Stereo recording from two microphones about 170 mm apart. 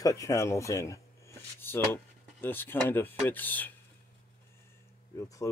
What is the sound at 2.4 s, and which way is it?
Speech, 10° left (ahead or behind).